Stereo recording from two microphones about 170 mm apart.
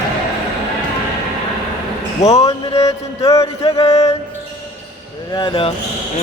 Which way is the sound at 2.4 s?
20° left (ahead or behind).